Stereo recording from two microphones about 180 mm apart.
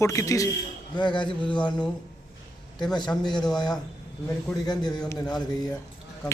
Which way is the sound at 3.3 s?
5° left (ahead or behind).